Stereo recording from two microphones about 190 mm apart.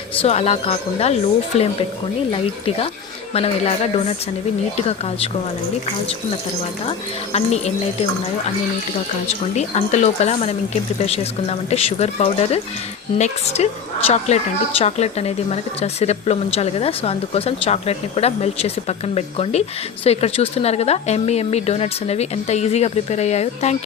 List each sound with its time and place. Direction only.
0.2 s speech: 35° left (ahead or behind)
7.3 s speech: 35° left (ahead or behind)
9.2 s speech: 35° left (ahead or behind)